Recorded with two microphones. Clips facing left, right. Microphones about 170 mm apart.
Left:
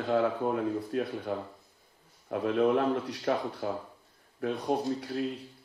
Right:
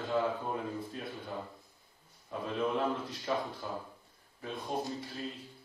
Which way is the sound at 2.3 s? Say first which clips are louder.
Left 8 dB; 70° left (ahead or behind).